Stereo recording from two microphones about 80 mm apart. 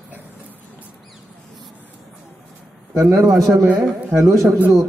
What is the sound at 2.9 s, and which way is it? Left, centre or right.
A man's voice, right.